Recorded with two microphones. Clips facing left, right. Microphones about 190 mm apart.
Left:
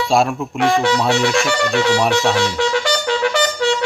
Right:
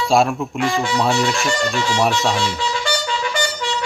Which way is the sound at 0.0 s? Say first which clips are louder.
Even; centre (ahead or behind).